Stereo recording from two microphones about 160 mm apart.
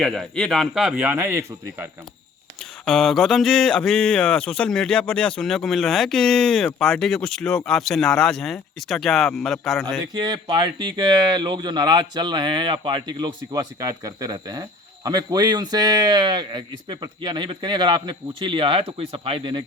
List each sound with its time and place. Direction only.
0.0 s speech: centre (ahead or behind)
1.1 s speech: 15° right (ahead or behind)
2.8 s speech: 5° left (ahead or behind)
10.2 s speech: 25° right (ahead or behind)